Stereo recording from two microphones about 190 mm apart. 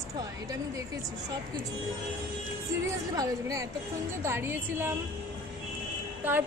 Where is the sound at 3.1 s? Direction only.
20° right (ahead or behind).